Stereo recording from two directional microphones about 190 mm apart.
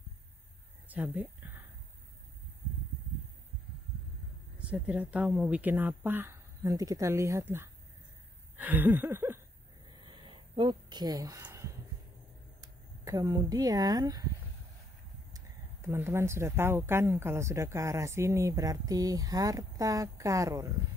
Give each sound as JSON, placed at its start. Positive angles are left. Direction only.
{"t": 0.8, "sound": "speech", "side_deg": -10}
{"t": 4.6, "sound": "speech", "side_deg": -5}
{"t": 8.5, "sound": "a sound", "side_deg": -10}
{"t": 9.9, "sound": "a sound", "side_deg": -25}
{"t": 13.0, "sound": "speech", "side_deg": -20}
{"t": 15.3, "sound": "speech", "side_deg": -15}